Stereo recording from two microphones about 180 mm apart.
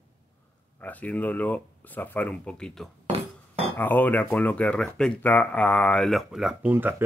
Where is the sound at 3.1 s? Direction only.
35° right (ahead or behind).